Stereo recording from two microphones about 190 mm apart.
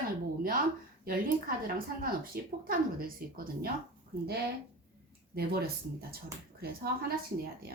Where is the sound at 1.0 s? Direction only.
50° right (ahead or behind).